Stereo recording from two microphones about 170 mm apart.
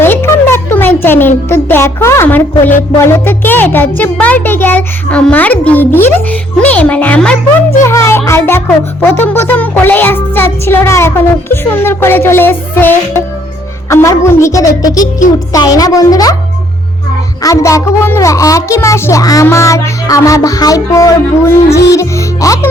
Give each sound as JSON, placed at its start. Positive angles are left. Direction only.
{"t": 0.0, "sound": "a sound", "side_deg": 15}
{"t": 1.0, "sound": "a child's voice", "side_deg": 10}
{"t": 17.4, "sound": "a child's voice", "side_deg": 20}